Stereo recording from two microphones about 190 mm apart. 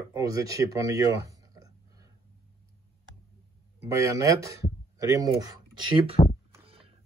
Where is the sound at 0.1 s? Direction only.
15° right (ahead or behind).